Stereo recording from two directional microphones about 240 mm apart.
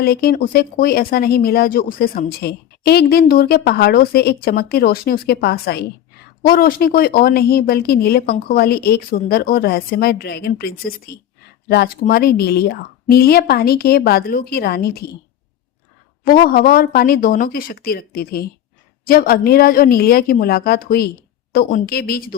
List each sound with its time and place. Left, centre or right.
0.0 s speech: left
16.2 s speech: left